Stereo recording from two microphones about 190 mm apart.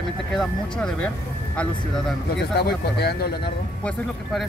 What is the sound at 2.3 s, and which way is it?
Speech, 60° left (ahead or behind).